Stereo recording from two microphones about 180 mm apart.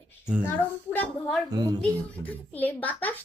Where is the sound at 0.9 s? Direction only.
5° left (ahead or behind).